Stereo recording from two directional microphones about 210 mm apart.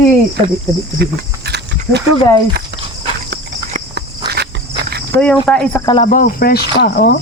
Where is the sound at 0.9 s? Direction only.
50° right (ahead or behind).